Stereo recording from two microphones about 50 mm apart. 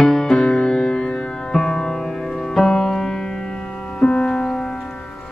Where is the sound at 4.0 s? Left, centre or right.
Centre.